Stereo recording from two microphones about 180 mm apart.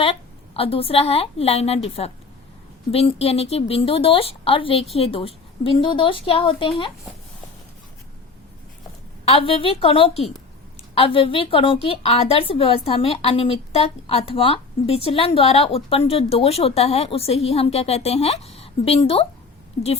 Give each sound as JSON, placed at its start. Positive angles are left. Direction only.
{"t": 0.0, "sound": "a woman's voice", "side_deg": 30}
{"t": 9.2, "sound": "a woman's voice", "side_deg": 30}